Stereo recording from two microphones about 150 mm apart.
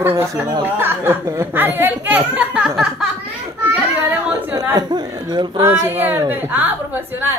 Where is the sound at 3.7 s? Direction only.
10° right (ahead or behind).